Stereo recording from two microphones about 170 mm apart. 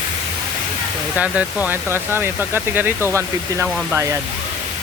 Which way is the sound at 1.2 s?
10° right (ahead or behind).